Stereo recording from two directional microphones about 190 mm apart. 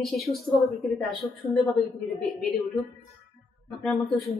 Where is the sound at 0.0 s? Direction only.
Centre (ahead or behind).